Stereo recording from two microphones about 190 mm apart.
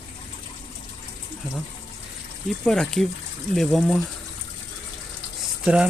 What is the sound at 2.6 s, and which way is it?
Speech, 5° left (ahead or behind).